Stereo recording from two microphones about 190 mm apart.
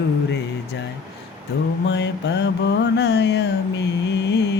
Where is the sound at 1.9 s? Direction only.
65° left (ahead or behind).